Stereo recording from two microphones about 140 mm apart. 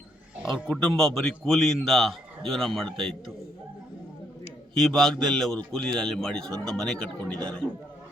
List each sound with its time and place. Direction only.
0.7 s a man's voice: 5° left (ahead or behind)
4.8 s a man's voice: 5° left (ahead or behind)